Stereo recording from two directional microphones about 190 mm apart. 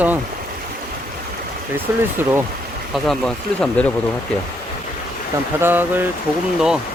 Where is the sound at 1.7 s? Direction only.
10° right (ahead or behind).